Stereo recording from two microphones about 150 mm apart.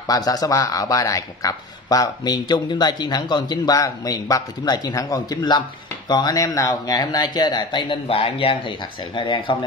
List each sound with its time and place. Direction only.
0.0 s a man's voice: 25° left (ahead or behind)